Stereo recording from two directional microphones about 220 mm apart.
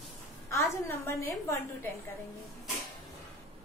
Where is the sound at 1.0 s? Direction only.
10° left (ahead or behind).